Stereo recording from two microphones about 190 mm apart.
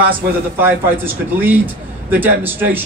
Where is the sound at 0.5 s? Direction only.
10° right (ahead or behind).